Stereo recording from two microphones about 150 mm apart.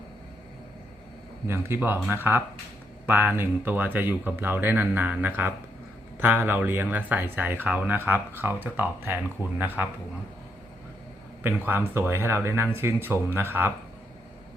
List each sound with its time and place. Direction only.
1.5 s speech: 15° right (ahead or behind)
11.6 s speech: 15° right (ahead or behind)